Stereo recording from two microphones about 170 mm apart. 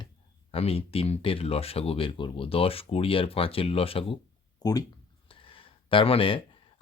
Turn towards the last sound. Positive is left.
turn(degrees=30)  # may be behind; listen again after turning